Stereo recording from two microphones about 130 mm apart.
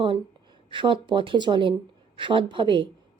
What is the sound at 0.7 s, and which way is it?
A woman's voice, 40° right (ahead or behind).